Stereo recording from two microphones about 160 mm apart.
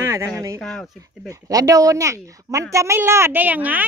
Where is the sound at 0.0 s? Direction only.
20° right (ahead or behind).